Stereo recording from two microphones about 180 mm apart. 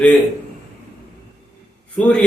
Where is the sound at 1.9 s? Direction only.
5° left (ahead or behind).